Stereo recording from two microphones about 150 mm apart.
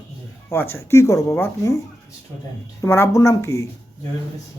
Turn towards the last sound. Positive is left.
turn(degrees=20)  # may be behind; listen again after turning